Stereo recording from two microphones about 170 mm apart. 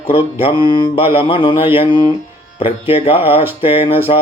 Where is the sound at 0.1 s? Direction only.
35° left (ahead or behind).